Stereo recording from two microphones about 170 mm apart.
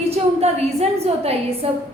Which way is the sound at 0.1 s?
40° right (ahead or behind).